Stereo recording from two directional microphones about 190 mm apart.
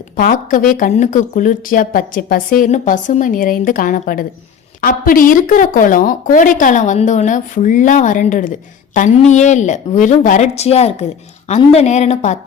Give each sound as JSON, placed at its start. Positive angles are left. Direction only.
{"t": 0.2, "sound": "a woman's voice", "side_deg": 45}